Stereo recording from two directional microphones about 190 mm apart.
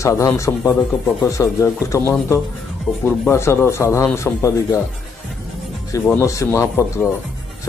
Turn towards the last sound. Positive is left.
turn(degrees=15)  # may be behind; listen again after turning